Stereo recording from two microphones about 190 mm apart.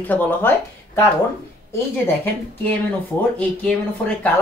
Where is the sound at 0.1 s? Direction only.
10° left (ahead or behind).